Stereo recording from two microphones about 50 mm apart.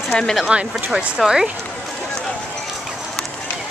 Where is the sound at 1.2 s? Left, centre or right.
Centre.